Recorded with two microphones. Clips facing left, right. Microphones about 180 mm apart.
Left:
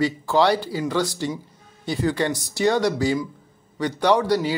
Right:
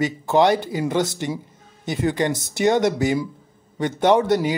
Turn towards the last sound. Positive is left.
turn(degrees=-20)  # may be behind; listen again after turning